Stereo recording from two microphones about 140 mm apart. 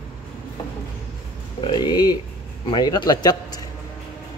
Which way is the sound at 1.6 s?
30° left (ahead or behind).